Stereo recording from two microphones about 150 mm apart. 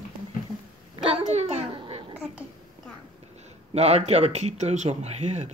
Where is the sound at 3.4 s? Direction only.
45° right (ahead or behind).